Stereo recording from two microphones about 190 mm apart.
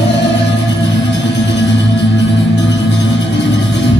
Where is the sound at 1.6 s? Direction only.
70° left (ahead or behind).